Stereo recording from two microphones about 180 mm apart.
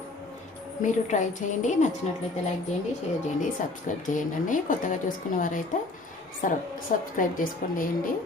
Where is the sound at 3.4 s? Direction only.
45° left (ahead or behind).